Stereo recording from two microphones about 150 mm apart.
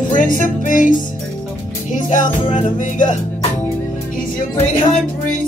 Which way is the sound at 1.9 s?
60° left (ahead or behind).